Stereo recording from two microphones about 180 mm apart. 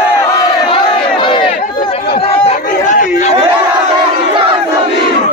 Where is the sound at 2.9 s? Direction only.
45° left (ahead or behind).